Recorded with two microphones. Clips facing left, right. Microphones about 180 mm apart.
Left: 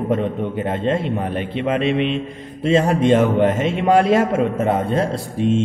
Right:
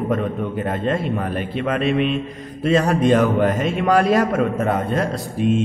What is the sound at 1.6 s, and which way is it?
Speech, 20° left (ahead or behind).